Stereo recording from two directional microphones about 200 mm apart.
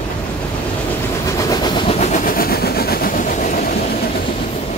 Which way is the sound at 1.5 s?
20° left (ahead or behind).